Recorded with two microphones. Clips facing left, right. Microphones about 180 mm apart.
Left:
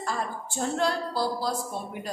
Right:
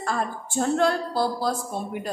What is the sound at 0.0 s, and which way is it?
A woman's voice, 55° right (ahead or behind).